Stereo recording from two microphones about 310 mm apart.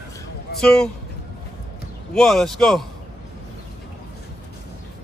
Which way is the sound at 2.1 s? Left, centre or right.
Centre.